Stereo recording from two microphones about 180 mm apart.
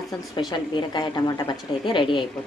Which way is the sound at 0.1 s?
20° left (ahead or behind).